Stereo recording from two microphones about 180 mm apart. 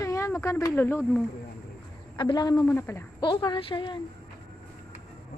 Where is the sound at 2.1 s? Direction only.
25° left (ahead or behind).